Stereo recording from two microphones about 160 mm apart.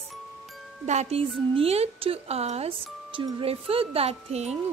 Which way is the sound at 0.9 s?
40° right (ahead or behind).